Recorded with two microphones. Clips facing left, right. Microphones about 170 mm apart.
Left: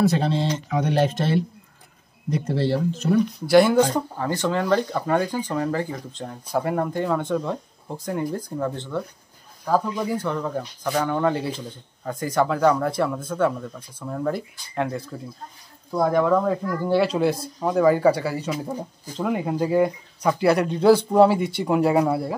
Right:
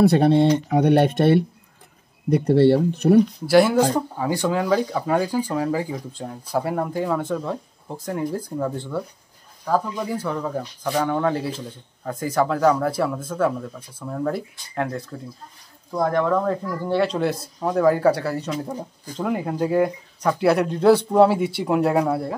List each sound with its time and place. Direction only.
0.0 s speech: 60° right (ahead or behind)
3.4 s speech: 5° right (ahead or behind)